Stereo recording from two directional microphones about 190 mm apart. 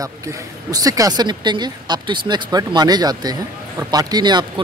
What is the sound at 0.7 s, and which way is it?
Speech, 20° right (ahead or behind).